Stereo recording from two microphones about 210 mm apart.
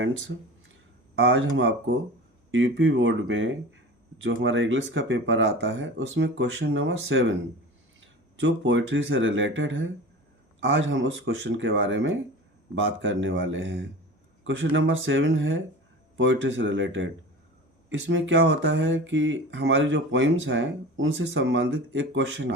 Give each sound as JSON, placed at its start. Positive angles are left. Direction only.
{"t": 1.2, "sound": "speech", "side_deg": -65}
{"t": 8.4, "sound": "speech", "side_deg": -60}